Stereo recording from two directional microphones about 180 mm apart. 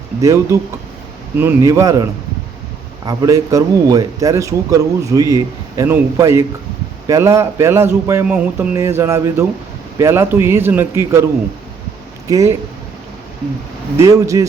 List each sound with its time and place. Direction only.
0.2 s a man's voice: 15° right (ahead or behind)
3.1 s a man's voice: 20° right (ahead or behind)
12.3 s a man's voice: 15° right (ahead or behind)
13.9 s a man's voice: 15° right (ahead or behind)